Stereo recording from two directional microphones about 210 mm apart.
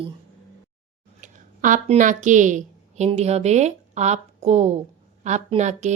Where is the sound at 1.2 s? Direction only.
40° right (ahead or behind).